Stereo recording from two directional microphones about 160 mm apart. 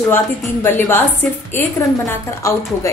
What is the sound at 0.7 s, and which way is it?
Speech, 15° left (ahead or behind).